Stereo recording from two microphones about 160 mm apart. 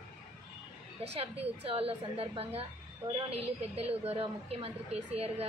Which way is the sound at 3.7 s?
40° right (ahead or behind).